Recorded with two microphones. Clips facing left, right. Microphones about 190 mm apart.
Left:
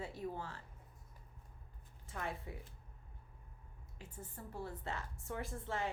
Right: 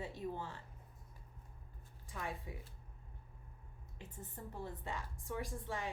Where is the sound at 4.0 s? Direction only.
15° right (ahead or behind).